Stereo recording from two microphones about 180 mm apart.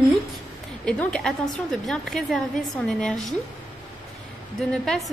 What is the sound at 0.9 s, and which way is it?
A woman's voice, 5° left (ahead or behind).